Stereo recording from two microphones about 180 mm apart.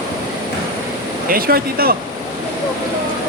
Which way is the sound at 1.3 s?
55° right (ahead or behind).